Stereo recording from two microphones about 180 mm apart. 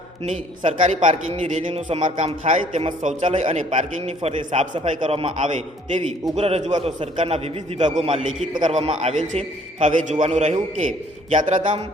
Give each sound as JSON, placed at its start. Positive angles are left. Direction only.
{"t": 0.3, "sound": "a man's voice", "side_deg": -40}
{"t": 2.0, "sound": "a man's voice", "side_deg": -45}
{"t": 11.6, "sound": "speech", "side_deg": -30}